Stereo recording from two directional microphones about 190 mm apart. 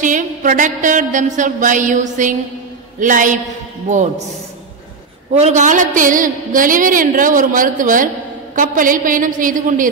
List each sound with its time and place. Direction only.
0.0 s a woman's voice: 40° right (ahead or behind)
5.4 s a woman's voice: 40° right (ahead or behind)